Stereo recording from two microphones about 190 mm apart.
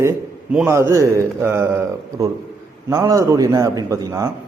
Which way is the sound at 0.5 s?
15° right (ahead or behind).